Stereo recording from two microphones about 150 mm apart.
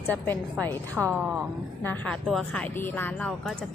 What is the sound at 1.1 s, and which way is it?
Speech, 5° right (ahead or behind).